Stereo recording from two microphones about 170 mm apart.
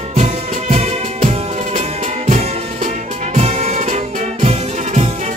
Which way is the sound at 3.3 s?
40° right (ahead or behind).